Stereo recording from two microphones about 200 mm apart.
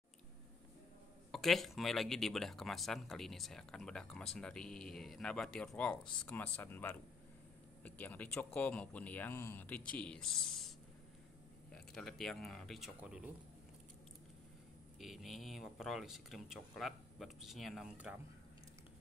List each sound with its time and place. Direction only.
1.3 s speech: centre (ahead or behind)
11.7 s speech: centre (ahead or behind)
15.0 s speech: centre (ahead or behind)